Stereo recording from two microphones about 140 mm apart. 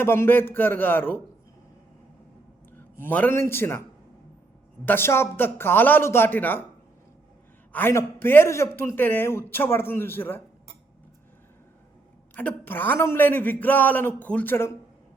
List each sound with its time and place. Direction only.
0.0 s a man's voice: 15° left (ahead or behind)
3.0 s a man's voice: 15° left (ahead or behind)
4.9 s a man's voice: 15° left (ahead or behind)
7.7 s a man's voice: 15° left (ahead or behind)
12.3 s a man's voice: 15° left (ahead or behind)